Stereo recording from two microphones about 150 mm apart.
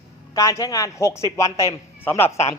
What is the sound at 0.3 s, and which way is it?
A man's voice, 20° left (ahead or behind).